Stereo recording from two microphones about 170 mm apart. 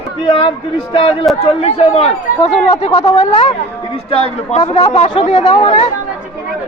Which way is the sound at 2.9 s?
20° left (ahead or behind).